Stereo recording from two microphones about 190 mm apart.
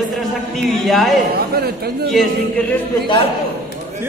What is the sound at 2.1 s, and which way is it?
Speech, 5° left (ahead or behind).